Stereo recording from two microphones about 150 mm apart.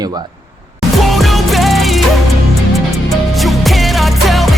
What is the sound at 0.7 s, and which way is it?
Music, centre (ahead or behind).